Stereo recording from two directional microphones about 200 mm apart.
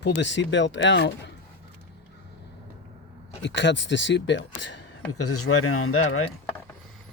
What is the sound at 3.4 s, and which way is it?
Speech, 65° left (ahead or behind).